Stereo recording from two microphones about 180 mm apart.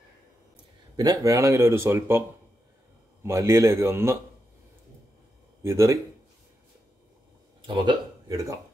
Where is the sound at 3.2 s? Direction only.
15° right (ahead or behind).